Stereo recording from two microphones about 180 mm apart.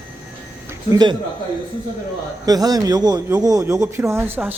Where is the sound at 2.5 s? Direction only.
20° right (ahead or behind).